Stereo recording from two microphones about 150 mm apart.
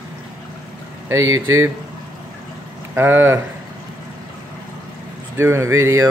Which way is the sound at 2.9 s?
15° right (ahead or behind).